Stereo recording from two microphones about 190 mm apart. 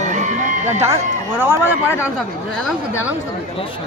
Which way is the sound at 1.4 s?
10° right (ahead or behind).